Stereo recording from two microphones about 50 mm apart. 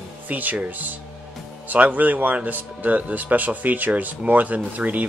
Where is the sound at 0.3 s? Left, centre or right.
Right.